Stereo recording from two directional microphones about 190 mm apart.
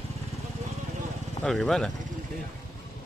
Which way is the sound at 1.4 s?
Centre (ahead or behind).